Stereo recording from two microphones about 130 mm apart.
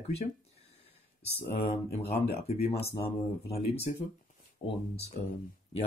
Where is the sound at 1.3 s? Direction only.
50° left (ahead or behind).